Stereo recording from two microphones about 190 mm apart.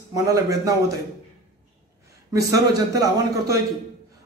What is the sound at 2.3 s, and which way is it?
Speech, 15° right (ahead or behind).